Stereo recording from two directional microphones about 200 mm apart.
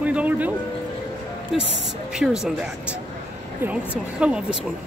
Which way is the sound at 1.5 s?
Centre (ahead or behind).